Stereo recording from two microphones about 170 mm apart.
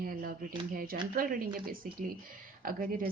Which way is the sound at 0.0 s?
55° right (ahead or behind).